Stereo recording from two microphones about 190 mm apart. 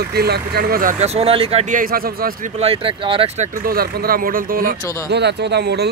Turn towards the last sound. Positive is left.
turn(degrees=-60)  # may be behind; listen again after turning